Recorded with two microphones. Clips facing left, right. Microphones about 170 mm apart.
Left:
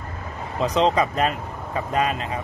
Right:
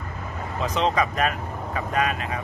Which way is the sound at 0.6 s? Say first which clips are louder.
Left 4 dB; 35° left (ahead or behind).